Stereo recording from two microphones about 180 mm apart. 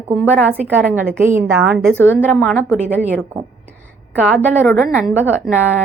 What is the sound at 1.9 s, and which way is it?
Speech, 10° left (ahead or behind).